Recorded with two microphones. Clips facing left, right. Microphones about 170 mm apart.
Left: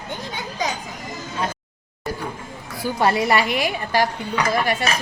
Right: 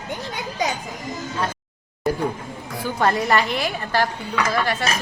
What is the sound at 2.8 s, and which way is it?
A woman's voice, 10° left (ahead or behind).